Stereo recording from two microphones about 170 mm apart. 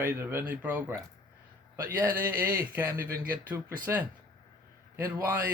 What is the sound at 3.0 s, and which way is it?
Speech, 55° right (ahead or behind).